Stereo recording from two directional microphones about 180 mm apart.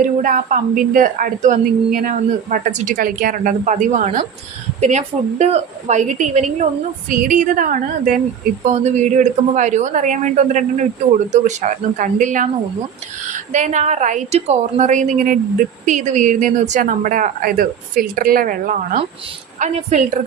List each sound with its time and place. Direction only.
0.0 s a woman's voice: 45° right (ahead or behind)